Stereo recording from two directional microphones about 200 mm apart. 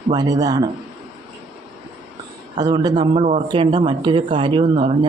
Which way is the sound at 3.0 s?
30° right (ahead or behind).